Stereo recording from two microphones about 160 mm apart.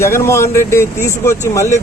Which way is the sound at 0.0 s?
15° left (ahead or behind).